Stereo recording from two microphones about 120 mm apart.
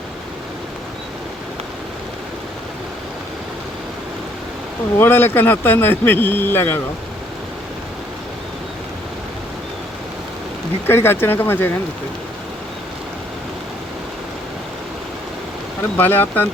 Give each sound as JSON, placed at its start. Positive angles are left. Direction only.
{"t": 4.9, "sound": "speech", "side_deg": 20}
{"t": 10.8, "sound": "speech", "side_deg": 20}
{"t": 16.0, "sound": "speech", "side_deg": 15}